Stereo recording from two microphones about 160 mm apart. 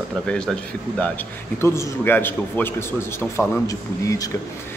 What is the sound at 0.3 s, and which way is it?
A man's voice, 5° left (ahead or behind).